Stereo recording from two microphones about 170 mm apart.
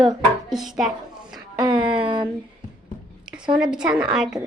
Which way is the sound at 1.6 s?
30° right (ahead or behind).